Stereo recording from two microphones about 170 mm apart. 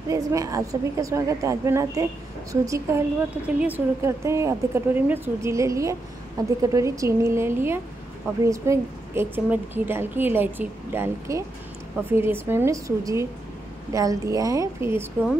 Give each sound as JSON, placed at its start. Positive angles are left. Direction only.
{"t": 0.1, "sound": "a woman's voice", "side_deg": -20}